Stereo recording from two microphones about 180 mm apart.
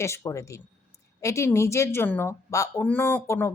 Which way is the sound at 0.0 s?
15° left (ahead or behind).